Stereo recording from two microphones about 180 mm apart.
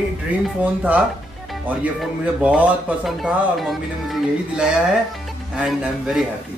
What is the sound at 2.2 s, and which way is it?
Speech, 5° right (ahead or behind).